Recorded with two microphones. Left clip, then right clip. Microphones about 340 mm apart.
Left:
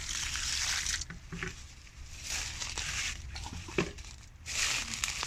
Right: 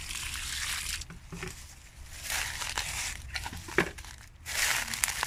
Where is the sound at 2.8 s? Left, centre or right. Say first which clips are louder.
Right 2 dB; right.